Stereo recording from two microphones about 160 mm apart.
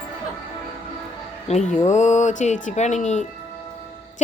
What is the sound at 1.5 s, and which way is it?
Speech, 45° left (ahead or behind).